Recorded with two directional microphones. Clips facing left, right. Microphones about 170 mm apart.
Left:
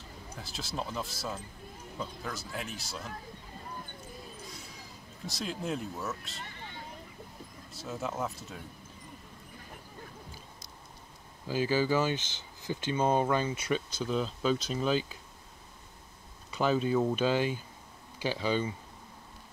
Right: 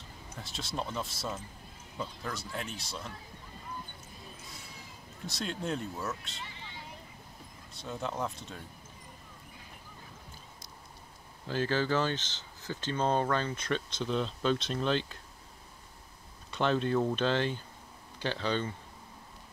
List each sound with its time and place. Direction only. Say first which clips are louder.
0.4 s speech: even; centre (ahead or behind)
5.2 s speech: even; centre (ahead or behind)
6.4 s vehicle: left 1 dB; 50° left (ahead or behind)
7.7 s speech: even; centre (ahead or behind)
11.4 s speech: left 2 dB; 10° left (ahead or behind)
16.4 s speech: left 1 dB; 5° left (ahead or behind)